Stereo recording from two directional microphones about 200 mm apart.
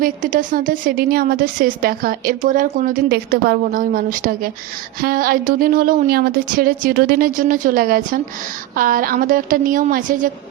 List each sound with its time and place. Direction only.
0.0 s a woman's voice: 45° right (ahead or behind)